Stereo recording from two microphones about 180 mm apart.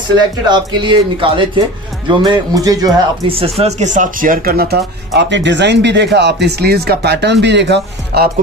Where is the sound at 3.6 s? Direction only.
40° right (ahead or behind); by 8.2 s 75° right (ahead or behind).